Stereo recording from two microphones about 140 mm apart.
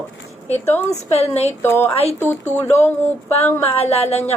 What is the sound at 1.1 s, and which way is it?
Speech, 50° left (ahead or behind).